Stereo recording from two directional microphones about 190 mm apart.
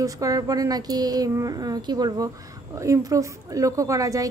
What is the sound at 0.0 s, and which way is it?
Speech, 20° right (ahead or behind).